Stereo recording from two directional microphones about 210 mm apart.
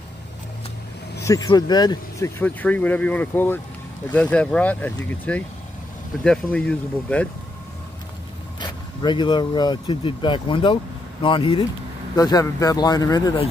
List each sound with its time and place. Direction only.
1.2 s speech: 15° left (ahead or behind)
8.5 s speech: 20° left (ahead or behind)